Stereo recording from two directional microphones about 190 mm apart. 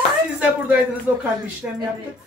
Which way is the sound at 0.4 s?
5° right (ahead or behind).